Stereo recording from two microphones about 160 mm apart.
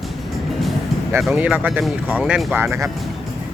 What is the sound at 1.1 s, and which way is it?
Speech, 5° right (ahead or behind).